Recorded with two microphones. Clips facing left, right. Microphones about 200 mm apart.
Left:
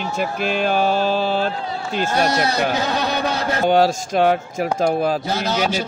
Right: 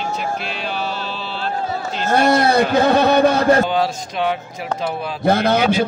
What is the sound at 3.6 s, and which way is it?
Speech, 45° left (ahead or behind).